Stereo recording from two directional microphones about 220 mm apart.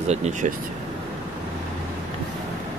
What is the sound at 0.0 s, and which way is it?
Speech, 30° right (ahead or behind).